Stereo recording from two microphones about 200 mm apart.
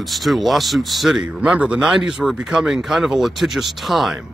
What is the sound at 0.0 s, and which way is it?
Speech, centre (ahead or behind).